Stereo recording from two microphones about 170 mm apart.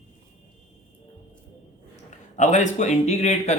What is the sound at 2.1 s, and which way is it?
A man's voice, 45° left (ahead or behind).